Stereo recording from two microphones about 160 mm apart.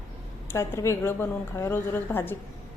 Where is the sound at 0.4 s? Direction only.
15° left (ahead or behind).